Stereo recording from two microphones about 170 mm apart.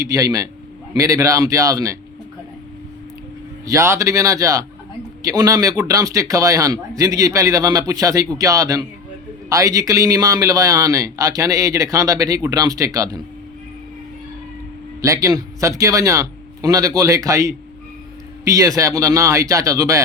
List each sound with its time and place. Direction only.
0.0 s a man's voice: 20° right (ahead or behind)
3.7 s a man's voice: 15° right (ahead or behind)
15.0 s a man's voice: 20° right (ahead or behind)